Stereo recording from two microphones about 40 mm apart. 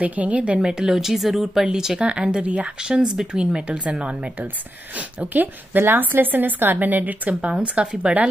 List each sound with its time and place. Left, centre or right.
0.0 s speech: right
0.6 s speech: centre
2.0 s speech: right
2.8 s a woman's voice: centre